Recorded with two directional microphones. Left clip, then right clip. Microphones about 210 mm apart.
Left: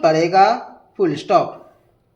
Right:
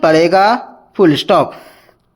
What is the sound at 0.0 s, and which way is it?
Speech, 50° right (ahead or behind).